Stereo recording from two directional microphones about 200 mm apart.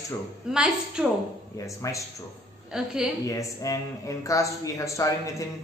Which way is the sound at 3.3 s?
15° left (ahead or behind).